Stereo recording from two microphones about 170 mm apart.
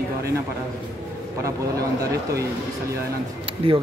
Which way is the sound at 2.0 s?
20° right (ahead or behind).